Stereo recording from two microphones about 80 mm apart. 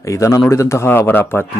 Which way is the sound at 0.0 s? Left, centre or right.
Left.